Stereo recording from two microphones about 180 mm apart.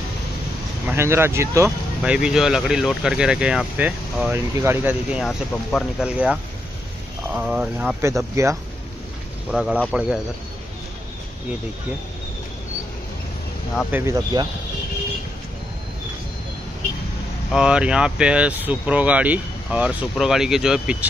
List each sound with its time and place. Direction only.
0.8 s speech: 15° right (ahead or behind)
2.1 s speech: 5° right (ahead or behind)
5.2 s speech: centre (ahead or behind); by 8.5 s 15° right (ahead or behind)
9.5 s speech: 5° right (ahead or behind)
13.9 s speech: 15° right (ahead or behind)
17.5 s speech: 5° right (ahead or behind)